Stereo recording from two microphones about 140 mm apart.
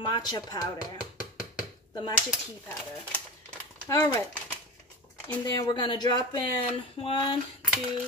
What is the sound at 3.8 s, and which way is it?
Speech, 25° left (ahead or behind).